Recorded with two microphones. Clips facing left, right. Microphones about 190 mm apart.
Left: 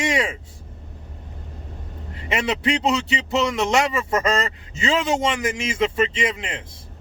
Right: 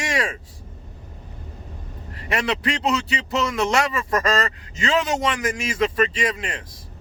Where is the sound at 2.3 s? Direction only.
25° left (ahead or behind).